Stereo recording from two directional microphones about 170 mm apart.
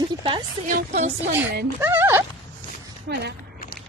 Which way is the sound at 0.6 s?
55° right (ahead or behind).